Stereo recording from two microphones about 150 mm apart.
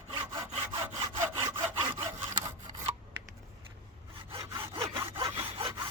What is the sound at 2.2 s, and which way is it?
Sawing, 20° right (ahead or behind).